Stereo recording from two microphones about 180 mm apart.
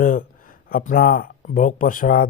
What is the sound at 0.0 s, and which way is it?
Speech, 50° left (ahead or behind).